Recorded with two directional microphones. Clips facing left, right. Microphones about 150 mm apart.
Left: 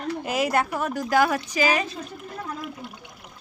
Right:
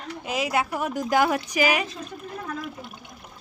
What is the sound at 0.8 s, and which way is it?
Speech, 15° right (ahead or behind).